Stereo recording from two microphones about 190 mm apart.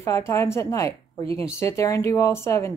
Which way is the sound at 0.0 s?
15° left (ahead or behind).